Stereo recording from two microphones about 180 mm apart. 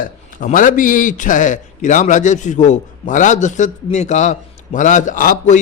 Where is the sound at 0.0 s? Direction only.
50° left (ahead or behind).